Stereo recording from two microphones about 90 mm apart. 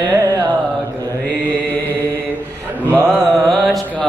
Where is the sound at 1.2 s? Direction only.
20° left (ahead or behind).